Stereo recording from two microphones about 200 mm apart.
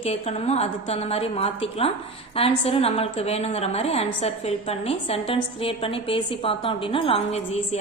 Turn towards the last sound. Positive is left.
turn(degrees=30)  # may be behind; listen again after turning